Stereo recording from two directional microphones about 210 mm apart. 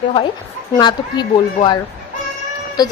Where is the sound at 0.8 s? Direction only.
20° left (ahead or behind).